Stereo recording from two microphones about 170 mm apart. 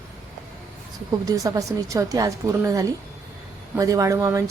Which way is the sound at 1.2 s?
20° right (ahead or behind).